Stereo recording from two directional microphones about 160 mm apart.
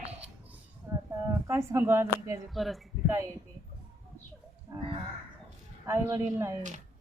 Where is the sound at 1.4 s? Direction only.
20° right (ahead or behind).